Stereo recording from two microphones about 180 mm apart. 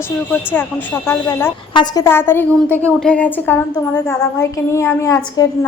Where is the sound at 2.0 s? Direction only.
10° left (ahead or behind).